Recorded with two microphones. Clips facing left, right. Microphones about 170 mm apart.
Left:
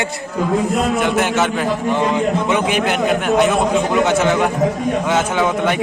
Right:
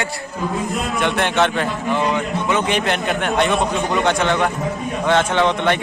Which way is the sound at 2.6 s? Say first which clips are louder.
Left 3 dB; 5° left (ahead or behind).